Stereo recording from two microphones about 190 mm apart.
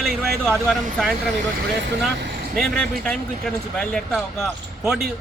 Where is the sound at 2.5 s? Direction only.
5° left (ahead or behind).